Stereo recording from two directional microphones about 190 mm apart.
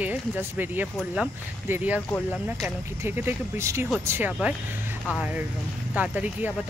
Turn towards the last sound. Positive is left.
turn(degrees=-10)  # may be behind; listen again after turning